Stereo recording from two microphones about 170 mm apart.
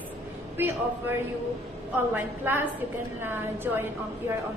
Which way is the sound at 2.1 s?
15° right (ahead or behind).